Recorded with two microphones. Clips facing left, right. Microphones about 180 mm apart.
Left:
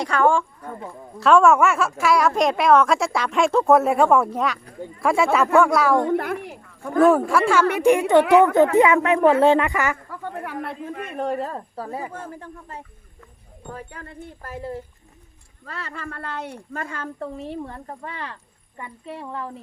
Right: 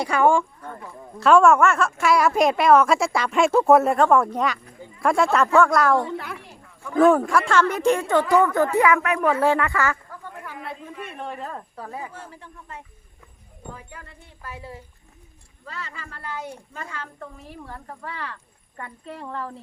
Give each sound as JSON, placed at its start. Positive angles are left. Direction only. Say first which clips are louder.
{"t": 0.0, "sound": "speech", "louder": "even", "side_deg": -10}
{"t": 1.2, "sound": "a woman's voice", "louder": "even", "side_deg": 0}
{"t": 6.0, "sound": "speech", "louder": "left 7 dB", "side_deg": 50}
{"t": 7.0, "sound": "a woman's voice", "louder": "left 1 dB", "side_deg": 5}
{"t": 8.2, "sound": "speech", "louder": "left 4 dB", "side_deg": 70}
{"t": 8.7, "sound": "speech", "louder": "left 3 dB", "side_deg": 20}
{"t": 10.1, "sound": "speech", "louder": "left 7 dB", "side_deg": 65}
{"t": 12.1, "sound": "speech", "louder": "left 6 dB", "side_deg": 50}
{"t": 13.7, "sound": "speech", "louder": "left 7 dB", "side_deg": 60}
{"t": 17.2, "sound": "speech", "louder": "left 9 dB", "side_deg": 30}